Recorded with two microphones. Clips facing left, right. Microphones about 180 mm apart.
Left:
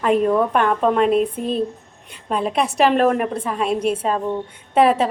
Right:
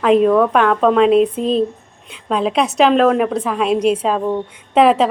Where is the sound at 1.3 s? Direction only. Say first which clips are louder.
Right 5 dB; 25° right (ahead or behind).